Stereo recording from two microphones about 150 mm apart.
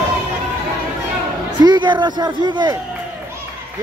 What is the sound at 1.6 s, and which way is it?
Speech, 30° right (ahead or behind).